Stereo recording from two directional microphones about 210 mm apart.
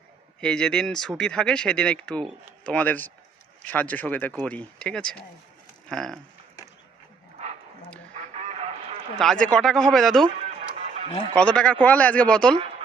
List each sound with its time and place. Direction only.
0.3 s speech: 5° left (ahead or behind)
8.1 s honk: 35° right (ahead or behind)
9.1 s speech: 5° left (ahead or behind)
11.3 s speech: 5° left (ahead or behind)